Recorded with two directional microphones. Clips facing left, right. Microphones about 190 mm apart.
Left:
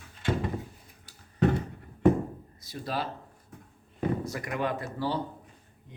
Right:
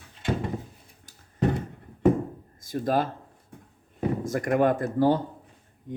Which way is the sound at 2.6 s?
50° right (ahead or behind).